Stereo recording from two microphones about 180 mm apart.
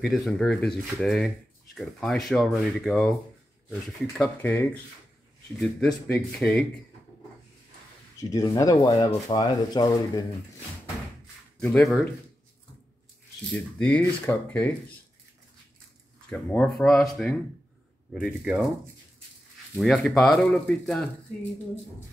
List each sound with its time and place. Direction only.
0.0 s speech: centre (ahead or behind)
4.2 s speech: 10° left (ahead or behind)
8.2 s speech: 20° left (ahead or behind)
11.6 s speech: 5° left (ahead or behind)
13.5 s speech: 5° left (ahead or behind)
16.3 s speech: 5° left (ahead or behind)
19.8 s speech: centre (ahead or behind)